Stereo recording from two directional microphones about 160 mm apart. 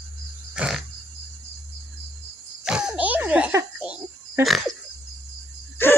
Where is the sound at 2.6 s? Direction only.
5° right (ahead or behind).